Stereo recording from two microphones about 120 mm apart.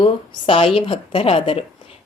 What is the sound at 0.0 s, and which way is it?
A woman's voice, 50° left (ahead or behind).